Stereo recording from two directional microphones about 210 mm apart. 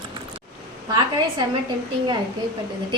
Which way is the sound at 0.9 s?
20° right (ahead or behind).